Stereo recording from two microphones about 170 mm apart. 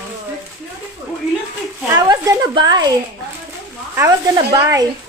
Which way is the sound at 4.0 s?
25° right (ahead or behind).